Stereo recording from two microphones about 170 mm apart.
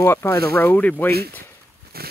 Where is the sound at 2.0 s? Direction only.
65° right (ahead or behind).